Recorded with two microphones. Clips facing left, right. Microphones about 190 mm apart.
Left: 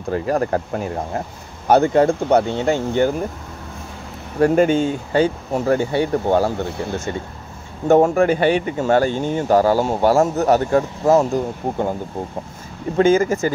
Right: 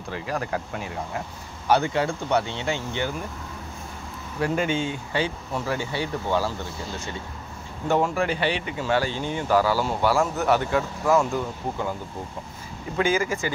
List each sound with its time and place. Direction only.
0.1 s speech: 45° left (ahead or behind)
4.4 s speech: 45° left (ahead or behind); by 7.0 s 60° left (ahead or behind)
7.9 s speech: 45° left (ahead or behind)